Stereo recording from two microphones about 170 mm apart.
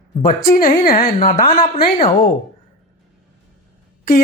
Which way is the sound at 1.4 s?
35° left (ahead or behind).